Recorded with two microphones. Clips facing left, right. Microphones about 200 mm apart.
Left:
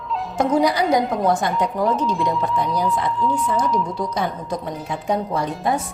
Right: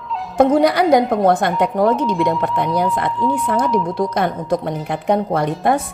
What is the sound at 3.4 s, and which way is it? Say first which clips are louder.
A woman's voice: right 3 dB; 60° right (ahead or behind).